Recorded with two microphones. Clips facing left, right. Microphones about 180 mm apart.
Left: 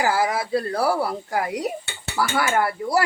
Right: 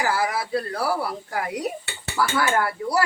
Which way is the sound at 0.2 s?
25° left (ahead or behind).